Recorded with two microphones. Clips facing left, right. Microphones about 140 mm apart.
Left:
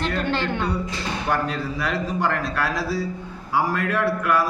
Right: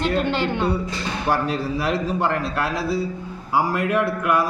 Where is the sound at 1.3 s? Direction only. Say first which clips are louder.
Right 3 dB; 30° right (ahead or behind).